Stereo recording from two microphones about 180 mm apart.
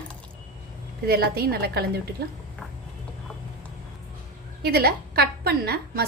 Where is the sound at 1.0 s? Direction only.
60° right (ahead or behind).